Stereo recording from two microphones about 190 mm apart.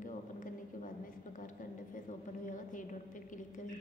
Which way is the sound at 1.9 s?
45° left (ahead or behind).